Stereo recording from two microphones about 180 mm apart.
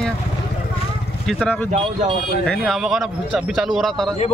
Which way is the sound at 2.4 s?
Centre (ahead or behind).